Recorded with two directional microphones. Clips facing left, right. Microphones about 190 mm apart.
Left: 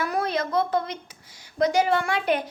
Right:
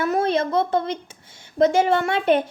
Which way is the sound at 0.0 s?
25° right (ahead or behind).